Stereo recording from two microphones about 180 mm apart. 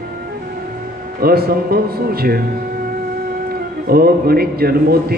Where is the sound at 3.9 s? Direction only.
60° right (ahead or behind).